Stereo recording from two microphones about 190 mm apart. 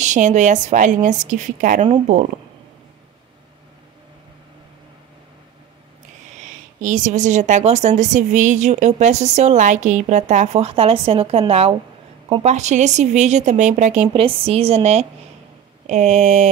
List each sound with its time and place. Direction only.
0.0 s a woman's voice: 40° right (ahead or behind)
6.8 s a woman's voice: 40° right (ahead or behind)
14.0 s a woman's voice: 30° right (ahead or behind)